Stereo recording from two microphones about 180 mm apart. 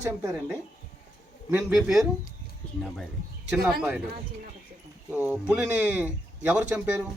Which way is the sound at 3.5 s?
Centre (ahead or behind).